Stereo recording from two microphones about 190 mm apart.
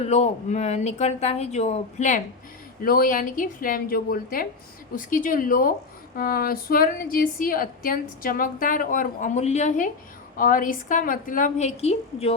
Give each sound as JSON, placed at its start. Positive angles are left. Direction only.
{"t": 0.0, "sound": "a woman's voice", "side_deg": 35}